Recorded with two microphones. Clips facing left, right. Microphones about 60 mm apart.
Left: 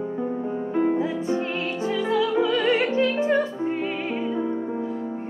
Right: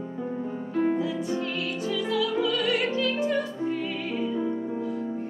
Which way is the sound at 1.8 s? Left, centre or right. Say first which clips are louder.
Left 4 dB; left.